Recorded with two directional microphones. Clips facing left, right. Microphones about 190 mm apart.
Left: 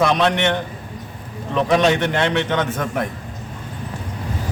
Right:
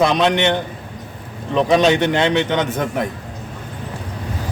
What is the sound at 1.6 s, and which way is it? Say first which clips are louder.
A man's voice: right 2 dB; 20° right (ahead or behind).